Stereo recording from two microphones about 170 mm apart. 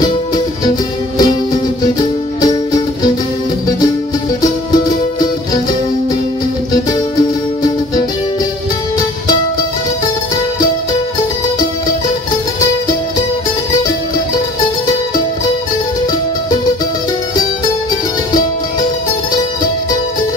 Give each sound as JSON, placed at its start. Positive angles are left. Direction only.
{"t": 1.1, "sound": "music", "side_deg": 25}
{"t": 4.4, "sound": "music", "side_deg": 25}
{"t": 6.7, "sound": "music", "side_deg": 25}